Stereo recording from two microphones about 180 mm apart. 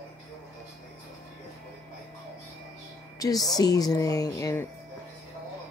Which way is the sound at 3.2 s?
20° left (ahead or behind).